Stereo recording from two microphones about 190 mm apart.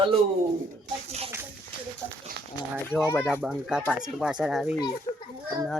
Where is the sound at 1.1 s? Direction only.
35° right (ahead or behind).